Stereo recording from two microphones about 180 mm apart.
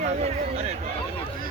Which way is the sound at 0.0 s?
40° right (ahead or behind).